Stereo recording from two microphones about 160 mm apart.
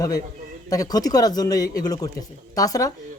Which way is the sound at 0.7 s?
25° left (ahead or behind).